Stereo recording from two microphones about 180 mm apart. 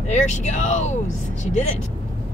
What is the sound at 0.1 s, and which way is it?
Speech, 40° left (ahead or behind).